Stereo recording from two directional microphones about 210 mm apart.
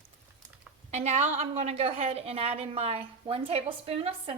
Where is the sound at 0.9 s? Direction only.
30° right (ahead or behind).